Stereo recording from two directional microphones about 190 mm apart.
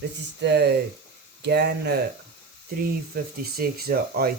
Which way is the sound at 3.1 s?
55° right (ahead or behind).